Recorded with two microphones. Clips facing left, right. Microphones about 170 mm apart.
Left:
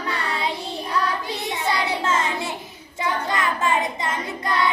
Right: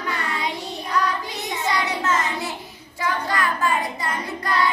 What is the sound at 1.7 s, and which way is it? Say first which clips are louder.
Child singing: right 1 dB; 25° left (ahead or behind).